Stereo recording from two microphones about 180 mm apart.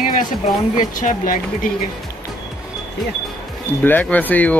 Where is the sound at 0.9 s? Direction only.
50° left (ahead or behind).